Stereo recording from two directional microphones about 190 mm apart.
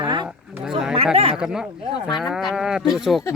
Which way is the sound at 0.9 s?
30° right (ahead or behind).